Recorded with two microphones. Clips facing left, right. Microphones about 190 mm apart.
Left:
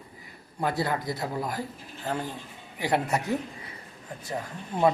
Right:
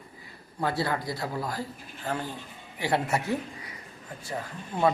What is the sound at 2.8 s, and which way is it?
Speech, 20° left (ahead or behind).